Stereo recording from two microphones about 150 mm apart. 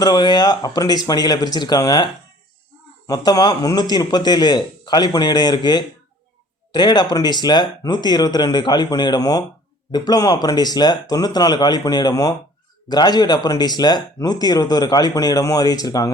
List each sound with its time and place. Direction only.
0.0 s speech: 30° left (ahead or behind)
3.1 s speech: 25° left (ahead or behind)